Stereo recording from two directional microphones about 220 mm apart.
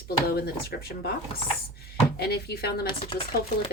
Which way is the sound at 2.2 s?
45° left (ahead or behind).